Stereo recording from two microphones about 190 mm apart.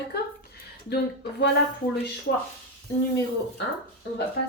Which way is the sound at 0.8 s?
60° left (ahead or behind).